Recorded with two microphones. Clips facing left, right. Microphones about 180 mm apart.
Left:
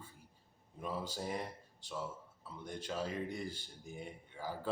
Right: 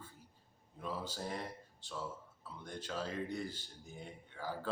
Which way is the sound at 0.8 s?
10° left (ahead or behind).